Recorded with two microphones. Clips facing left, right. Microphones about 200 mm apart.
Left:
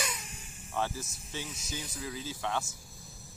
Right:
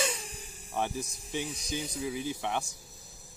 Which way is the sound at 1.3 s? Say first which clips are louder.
Right 6 dB; 15° right (ahead or behind).